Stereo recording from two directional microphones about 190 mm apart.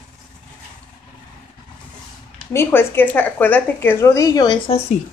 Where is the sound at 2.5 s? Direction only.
10° left (ahead or behind).